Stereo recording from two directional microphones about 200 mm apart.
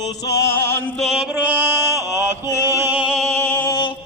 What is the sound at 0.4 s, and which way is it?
Music, 15° left (ahead or behind).